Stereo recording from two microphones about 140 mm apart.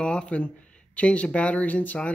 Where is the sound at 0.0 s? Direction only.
5° left (ahead or behind).